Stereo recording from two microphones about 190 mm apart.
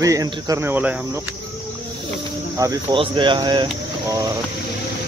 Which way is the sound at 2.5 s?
20° right (ahead or behind).